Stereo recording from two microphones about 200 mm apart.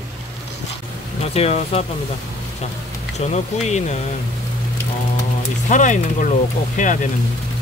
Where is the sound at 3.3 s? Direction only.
35° left (ahead or behind).